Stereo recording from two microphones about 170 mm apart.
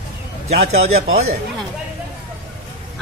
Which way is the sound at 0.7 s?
40° right (ahead or behind).